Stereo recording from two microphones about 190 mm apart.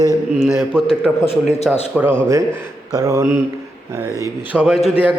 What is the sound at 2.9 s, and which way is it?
Speech, 20° right (ahead or behind).